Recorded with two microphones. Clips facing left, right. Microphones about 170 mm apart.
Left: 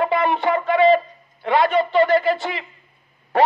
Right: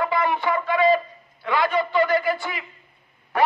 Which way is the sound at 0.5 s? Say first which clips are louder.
Left 5 dB; 30° left (ahead or behind).